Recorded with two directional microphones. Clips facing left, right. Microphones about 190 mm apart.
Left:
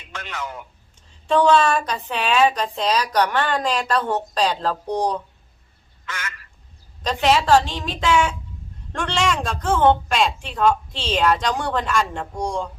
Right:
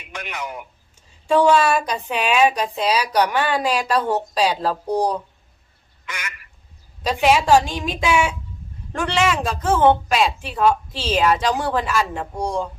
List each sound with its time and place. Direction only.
0.0 s a woman's voice: 15° right (ahead or behind)
6.1 s quack: 15° right (ahead or behind)
7.0 s a woman's voice: 10° right (ahead or behind)